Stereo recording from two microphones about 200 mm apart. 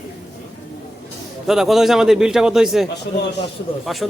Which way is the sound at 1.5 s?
Centre (ahead or behind).